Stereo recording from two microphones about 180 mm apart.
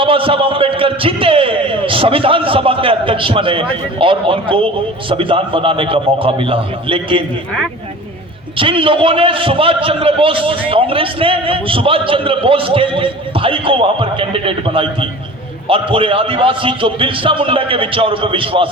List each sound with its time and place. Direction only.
0.0 s a man's voice: 30° right (ahead or behind)
8.5 s a man's voice: 30° right (ahead or behind)